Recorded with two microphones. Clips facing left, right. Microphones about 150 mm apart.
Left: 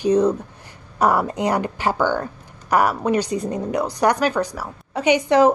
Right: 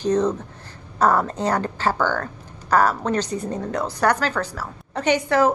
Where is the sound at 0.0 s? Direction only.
10° left (ahead or behind).